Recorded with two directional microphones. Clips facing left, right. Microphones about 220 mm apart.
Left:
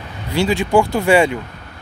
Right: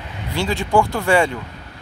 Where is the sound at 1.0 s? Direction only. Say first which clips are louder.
Left 3 dB; 20° left (ahead or behind).